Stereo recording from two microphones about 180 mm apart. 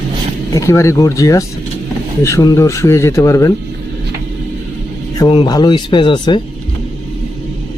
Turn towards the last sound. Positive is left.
turn(degrees=25)  # may be behind; listen again after turning